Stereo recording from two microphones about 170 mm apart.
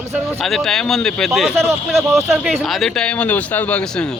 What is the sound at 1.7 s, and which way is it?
Speech, 15° right (ahead or behind).